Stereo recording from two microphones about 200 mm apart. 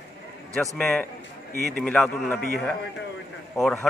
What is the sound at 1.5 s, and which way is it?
Speech, 50° right (ahead or behind).